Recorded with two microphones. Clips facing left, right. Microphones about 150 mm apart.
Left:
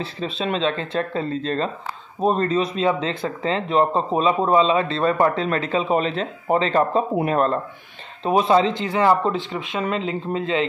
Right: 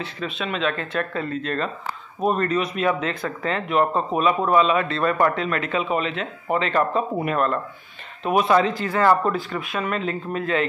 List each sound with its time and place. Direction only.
0.0 s speech: 30° left (ahead or behind)